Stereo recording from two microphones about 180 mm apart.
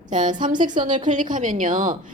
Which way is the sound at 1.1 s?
45° right (ahead or behind).